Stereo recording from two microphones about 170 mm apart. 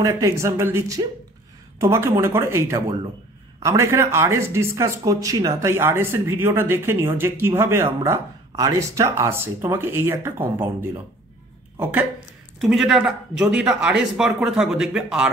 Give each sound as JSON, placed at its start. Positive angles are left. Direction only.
{"t": 0.0, "sound": "speech", "side_deg": -20}
{"t": 11.8, "sound": "a man's voice", "side_deg": -10}